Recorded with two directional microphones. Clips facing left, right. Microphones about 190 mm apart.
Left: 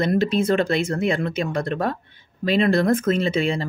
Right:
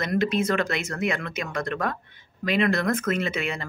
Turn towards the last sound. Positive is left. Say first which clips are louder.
# left 7 dB
turn(degrees=30)  # may be behind; listen again after turning